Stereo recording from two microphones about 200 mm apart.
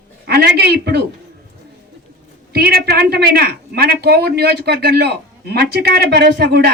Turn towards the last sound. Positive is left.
turn(degrees=-55)  # may be behind; listen again after turning